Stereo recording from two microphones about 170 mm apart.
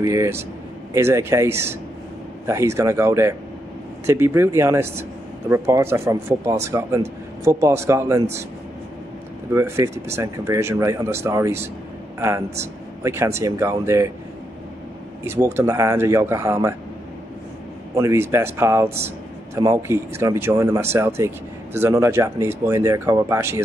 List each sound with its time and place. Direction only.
0.0 s a man's voice: 15° right (ahead or behind)
9.5 s a man's voice: 15° right (ahead or behind)
15.2 s a man's voice: 15° right (ahead or behind)
17.9 s a man's voice: 15° right (ahead or behind)